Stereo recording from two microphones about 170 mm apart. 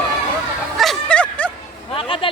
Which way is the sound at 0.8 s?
5° left (ahead or behind).